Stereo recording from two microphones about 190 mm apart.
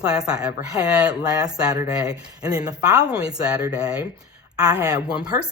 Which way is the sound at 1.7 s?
20° right (ahead or behind).